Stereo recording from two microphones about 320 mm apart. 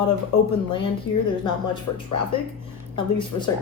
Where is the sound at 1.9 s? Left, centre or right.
Left.